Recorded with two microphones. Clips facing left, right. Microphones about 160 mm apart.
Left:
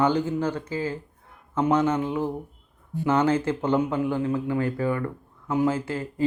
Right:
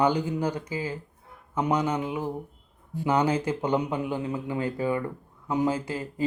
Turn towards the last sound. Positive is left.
turn(degrees=-15)  # may be behind; listen again after turning